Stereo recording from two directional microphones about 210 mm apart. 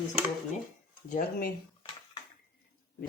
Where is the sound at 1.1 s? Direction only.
40° left (ahead or behind).